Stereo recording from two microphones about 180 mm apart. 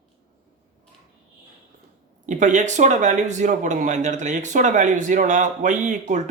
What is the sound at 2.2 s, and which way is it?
Speech, 45° right (ahead or behind).